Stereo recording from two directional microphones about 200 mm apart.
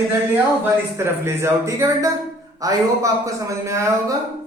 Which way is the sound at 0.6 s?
10° right (ahead or behind).